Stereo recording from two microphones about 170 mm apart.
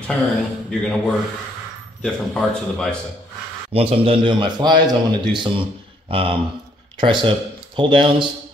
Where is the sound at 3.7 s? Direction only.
35° right (ahead or behind).